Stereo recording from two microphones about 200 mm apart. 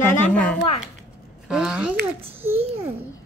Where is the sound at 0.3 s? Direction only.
5° left (ahead or behind).